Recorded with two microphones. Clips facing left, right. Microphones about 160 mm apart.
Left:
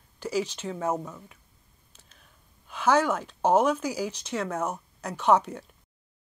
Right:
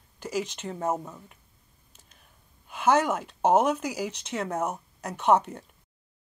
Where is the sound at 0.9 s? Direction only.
5° right (ahead or behind).